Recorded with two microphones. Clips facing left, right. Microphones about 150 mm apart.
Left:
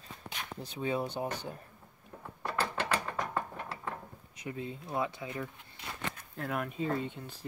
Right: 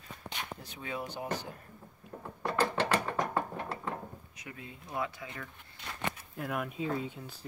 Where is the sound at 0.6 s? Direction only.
25° left (ahead or behind).